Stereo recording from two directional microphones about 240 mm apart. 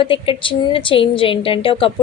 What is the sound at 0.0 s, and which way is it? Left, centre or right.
A woman's voice, left.